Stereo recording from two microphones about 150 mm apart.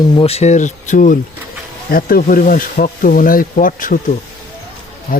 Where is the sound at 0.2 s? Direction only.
45° left (ahead or behind).